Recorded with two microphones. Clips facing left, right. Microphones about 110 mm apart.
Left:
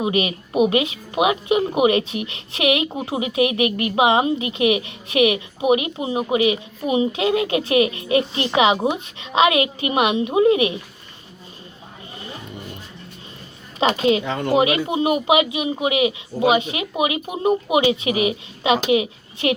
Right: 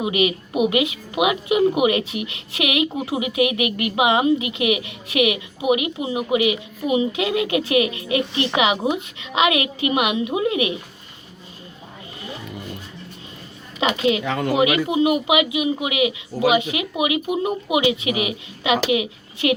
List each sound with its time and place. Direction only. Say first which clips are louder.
0.0 s speech: right 1 dB; 30° left (ahead or behind)
13.7 s speech: left 2 dB; 35° left (ahead or behind)
14.3 s speech: right 1 dB; 90° right
14.5 s a child's voice: left 1 dB; 30° left (ahead or behind)